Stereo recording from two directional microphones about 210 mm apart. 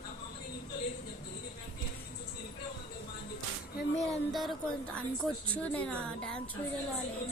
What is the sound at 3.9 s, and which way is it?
A woman's voice, centre (ahead or behind).